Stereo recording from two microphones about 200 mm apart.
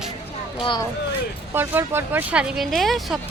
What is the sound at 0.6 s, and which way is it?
Speech, 25° left (ahead or behind).